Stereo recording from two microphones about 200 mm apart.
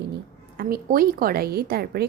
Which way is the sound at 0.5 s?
45° right (ahead or behind).